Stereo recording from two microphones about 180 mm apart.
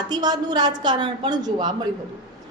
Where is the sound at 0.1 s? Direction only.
20° right (ahead or behind).